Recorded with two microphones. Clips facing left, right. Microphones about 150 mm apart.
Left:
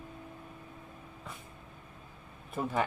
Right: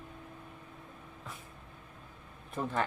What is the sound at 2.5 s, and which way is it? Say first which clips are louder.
Speech: left 2 dB; 10° left (ahead or behind).